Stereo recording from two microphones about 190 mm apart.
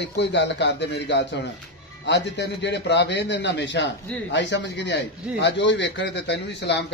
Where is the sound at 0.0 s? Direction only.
65° left (ahead or behind).